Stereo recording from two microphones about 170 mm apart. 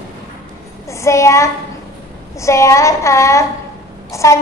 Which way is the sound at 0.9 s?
15° left (ahead or behind).